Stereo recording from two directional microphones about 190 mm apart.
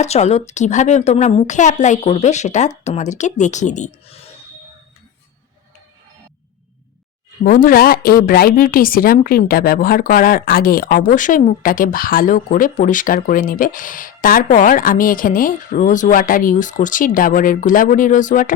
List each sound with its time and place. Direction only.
0.0 s a woman's voice: 35° left (ahead or behind)
7.4 s a woman's voice: 45° left (ahead or behind)